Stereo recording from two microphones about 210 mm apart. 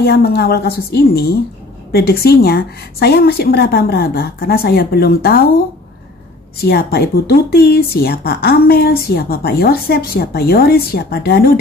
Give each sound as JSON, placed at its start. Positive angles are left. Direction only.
{"t": 0.0, "sound": "speech", "side_deg": 50}
{"t": 6.6, "sound": "speech", "side_deg": 50}